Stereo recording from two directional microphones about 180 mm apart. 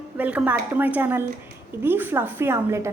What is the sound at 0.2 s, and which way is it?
Speech, 10° right (ahead or behind).